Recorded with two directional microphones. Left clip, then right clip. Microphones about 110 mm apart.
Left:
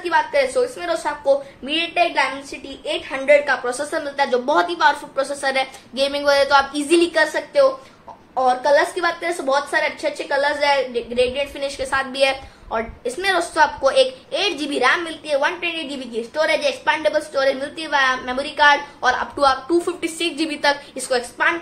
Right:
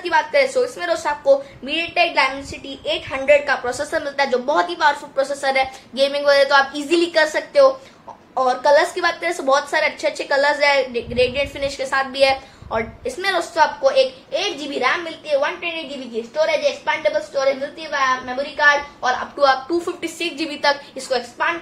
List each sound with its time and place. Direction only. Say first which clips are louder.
0.0 s a woman's voice: right 1 dB; 10° left (ahead or behind)
7.3 s a woman's voice: right 2 dB; centre (ahead or behind)
10.6 s a woman's voice: right 1 dB; 15° left (ahead or behind)
13.2 s a woman's voice: even; 30° left (ahead or behind); by 19.4 s 50° left (ahead or behind)
19.4 s a woman's voice: right 1 dB; 30° left (ahead or behind)